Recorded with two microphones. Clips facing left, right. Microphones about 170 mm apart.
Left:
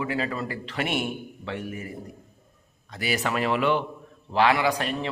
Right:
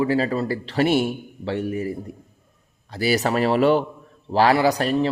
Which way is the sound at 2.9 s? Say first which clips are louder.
Right 6 dB; 35° right (ahead or behind).